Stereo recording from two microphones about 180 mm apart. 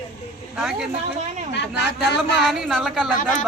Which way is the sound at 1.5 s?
70° left (ahead or behind).